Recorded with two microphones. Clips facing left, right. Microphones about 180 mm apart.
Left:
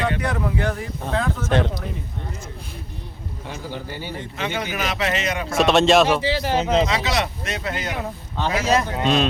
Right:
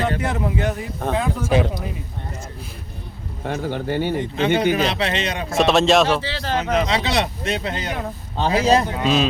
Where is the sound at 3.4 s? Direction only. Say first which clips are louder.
Right 8 dB; 60° right (ahead or behind).